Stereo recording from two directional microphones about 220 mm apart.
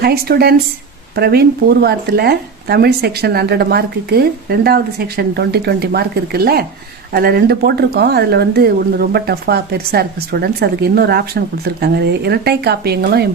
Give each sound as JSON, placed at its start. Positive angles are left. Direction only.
{"t": 0.0, "sound": "speech", "side_deg": -45}